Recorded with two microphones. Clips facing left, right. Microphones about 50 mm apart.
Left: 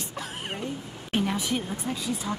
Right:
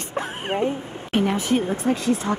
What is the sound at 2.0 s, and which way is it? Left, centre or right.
Speech, right.